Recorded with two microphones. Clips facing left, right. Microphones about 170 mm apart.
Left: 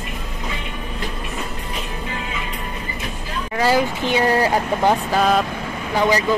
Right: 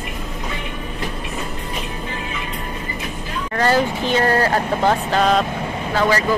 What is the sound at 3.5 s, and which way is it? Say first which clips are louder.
Vehicle: even; 10° left (ahead or behind).